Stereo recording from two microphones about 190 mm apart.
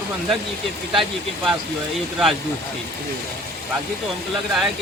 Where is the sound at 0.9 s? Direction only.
Centre (ahead or behind).